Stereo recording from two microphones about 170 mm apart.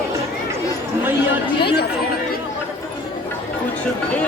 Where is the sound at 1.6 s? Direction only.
70° left (ahead or behind).